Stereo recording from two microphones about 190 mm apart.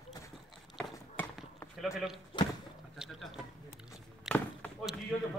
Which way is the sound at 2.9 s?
Centre (ahead or behind).